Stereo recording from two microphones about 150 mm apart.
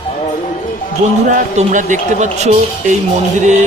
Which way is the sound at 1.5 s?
55° right (ahead or behind).